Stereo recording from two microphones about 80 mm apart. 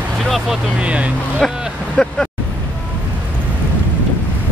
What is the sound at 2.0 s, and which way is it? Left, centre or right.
Vehicle, centre.